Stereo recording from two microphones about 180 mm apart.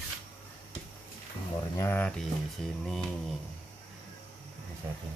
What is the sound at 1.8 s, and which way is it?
Speech, 10° left (ahead or behind).